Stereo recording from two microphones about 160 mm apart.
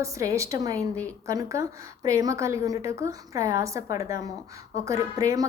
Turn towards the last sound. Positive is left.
turn(degrees=-20)  # may be behind; listen again after turning